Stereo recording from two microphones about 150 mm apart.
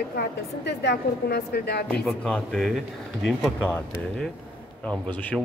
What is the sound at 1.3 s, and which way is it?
Speech, 90° left.